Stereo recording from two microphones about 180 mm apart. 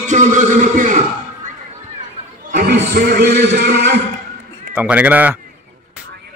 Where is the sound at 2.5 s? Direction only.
55° right (ahead or behind).